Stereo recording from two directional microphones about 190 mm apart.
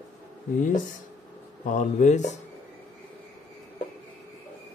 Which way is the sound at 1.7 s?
40° left (ahead or behind).